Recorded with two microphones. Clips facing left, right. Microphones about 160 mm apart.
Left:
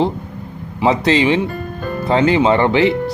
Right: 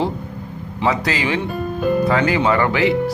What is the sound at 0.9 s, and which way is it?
Speech, 25° left (ahead or behind).